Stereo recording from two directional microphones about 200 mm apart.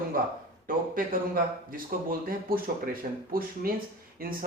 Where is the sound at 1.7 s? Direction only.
45° right (ahead or behind).